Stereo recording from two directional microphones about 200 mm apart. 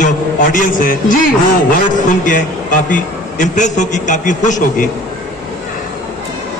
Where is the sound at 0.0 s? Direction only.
40° left (ahead or behind).